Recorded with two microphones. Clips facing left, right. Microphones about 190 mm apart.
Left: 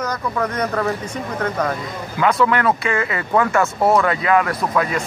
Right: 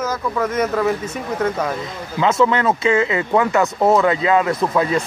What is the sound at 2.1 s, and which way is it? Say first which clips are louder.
Speech: right 1 dB; 25° right (ahead or behind).